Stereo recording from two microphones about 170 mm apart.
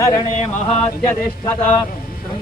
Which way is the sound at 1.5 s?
10° left (ahead or behind).